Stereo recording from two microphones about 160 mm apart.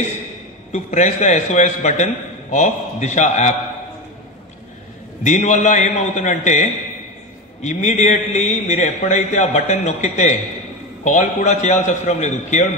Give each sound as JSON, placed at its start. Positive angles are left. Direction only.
{"t": 0.7, "sound": "a man's voice", "side_deg": 45}
{"t": 5.2, "sound": "a man's voice", "side_deg": 50}